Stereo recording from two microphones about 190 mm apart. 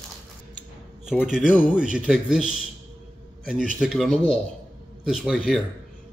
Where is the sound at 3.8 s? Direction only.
Centre (ahead or behind).